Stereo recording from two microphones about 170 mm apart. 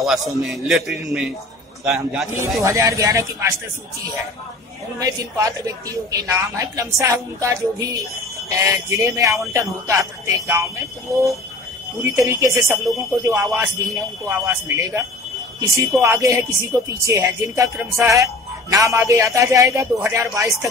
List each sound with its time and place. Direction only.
0.0 s a man's voice: centre (ahead or behind)
2.4 s a woman's voice: 20° right (ahead or behind)
4.9 s a woman's voice: 20° right (ahead or behind)